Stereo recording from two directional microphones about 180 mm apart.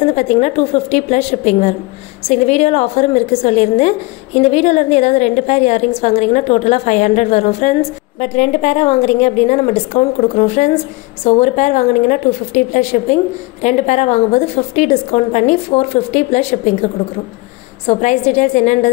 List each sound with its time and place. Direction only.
0.0 s a woman's voice: 40° left (ahead or behind)